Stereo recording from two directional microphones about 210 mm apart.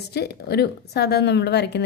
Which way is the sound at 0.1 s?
50° left (ahead or behind).